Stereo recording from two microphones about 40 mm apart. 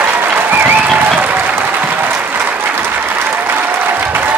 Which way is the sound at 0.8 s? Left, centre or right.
Right.